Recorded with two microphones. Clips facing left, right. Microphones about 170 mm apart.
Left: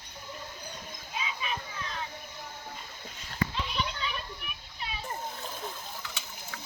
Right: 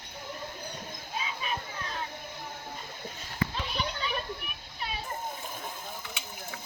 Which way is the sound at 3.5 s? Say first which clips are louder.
Even; 45° right (ahead or behind).